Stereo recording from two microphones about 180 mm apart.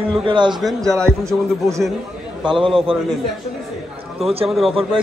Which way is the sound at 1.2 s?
15° right (ahead or behind).